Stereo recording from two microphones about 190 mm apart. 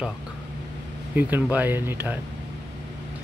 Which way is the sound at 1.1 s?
10° right (ahead or behind).